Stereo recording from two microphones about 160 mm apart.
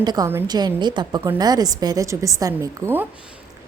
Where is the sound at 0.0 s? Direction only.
25° right (ahead or behind).